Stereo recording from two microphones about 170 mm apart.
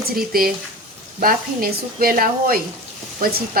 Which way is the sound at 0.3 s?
60° right (ahead or behind).